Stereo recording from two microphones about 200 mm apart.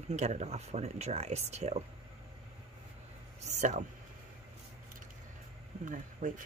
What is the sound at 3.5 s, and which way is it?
Speech, 35° right (ahead or behind).